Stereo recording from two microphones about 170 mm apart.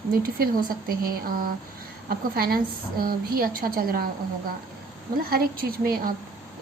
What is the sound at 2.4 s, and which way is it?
A woman's voice, 60° right (ahead or behind).